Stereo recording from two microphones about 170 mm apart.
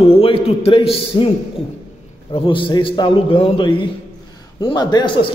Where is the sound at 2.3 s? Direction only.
30° left (ahead or behind).